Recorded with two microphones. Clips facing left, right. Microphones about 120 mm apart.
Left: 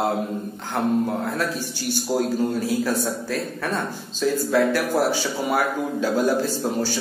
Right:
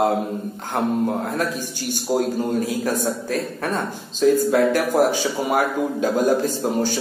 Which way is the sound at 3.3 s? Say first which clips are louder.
Right 2 dB; 40° right (ahead or behind).